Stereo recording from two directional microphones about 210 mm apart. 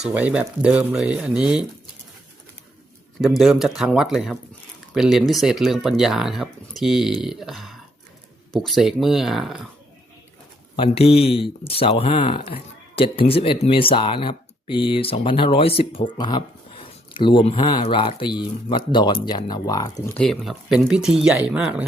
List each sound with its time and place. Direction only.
0.0 s speech: 5° right (ahead or behind)
3.2 s speech: centre (ahead or behind)
10.8 s speech: 30° left (ahead or behind)
20.1 s speech: 5° left (ahead or behind)